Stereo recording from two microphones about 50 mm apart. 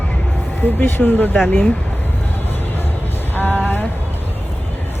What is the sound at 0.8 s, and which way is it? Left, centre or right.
Speech, left.